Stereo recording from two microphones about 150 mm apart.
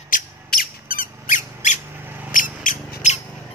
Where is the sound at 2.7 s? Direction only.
60° left (ahead or behind).